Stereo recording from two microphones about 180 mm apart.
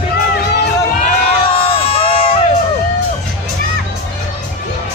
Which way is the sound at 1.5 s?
30° left (ahead or behind).